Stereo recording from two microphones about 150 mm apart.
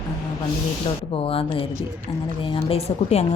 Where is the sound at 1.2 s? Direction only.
40° left (ahead or behind).